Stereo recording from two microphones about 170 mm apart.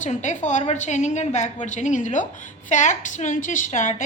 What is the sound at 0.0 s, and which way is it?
A woman's voice, 45° left (ahead or behind).